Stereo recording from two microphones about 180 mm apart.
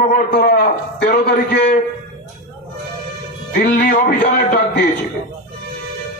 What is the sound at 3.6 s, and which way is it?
Speech, 55° left (ahead or behind).